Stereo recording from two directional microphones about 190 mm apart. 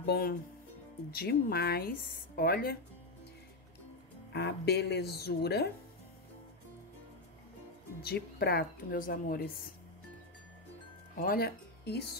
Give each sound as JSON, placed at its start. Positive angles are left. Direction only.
{"t": 0.0, "sound": "speech", "side_deg": 55}
{"t": 4.3, "sound": "speech", "side_deg": 60}
{"t": 8.0, "sound": "speech", "side_deg": 55}
{"t": 11.1, "sound": "speech", "side_deg": 50}